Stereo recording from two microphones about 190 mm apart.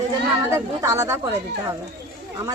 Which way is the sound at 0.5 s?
15° right (ahead or behind).